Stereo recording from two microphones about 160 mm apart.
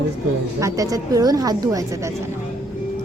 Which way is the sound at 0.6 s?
20° right (ahead or behind).